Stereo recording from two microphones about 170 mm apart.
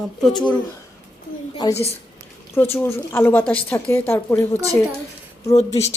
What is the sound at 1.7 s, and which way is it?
Speech, 35° left (ahead or behind).